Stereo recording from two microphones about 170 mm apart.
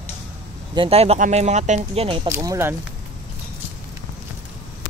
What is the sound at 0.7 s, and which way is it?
Speech, 35° right (ahead or behind).